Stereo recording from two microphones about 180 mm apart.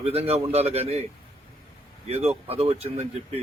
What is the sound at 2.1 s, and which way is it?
Speech, 35° right (ahead or behind).